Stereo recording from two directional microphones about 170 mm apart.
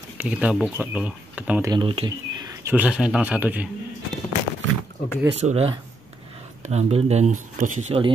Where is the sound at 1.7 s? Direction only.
30° right (ahead or behind).